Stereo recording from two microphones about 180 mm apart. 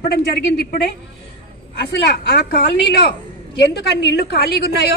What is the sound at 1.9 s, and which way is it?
A woman's voice, 60° left (ahead or behind).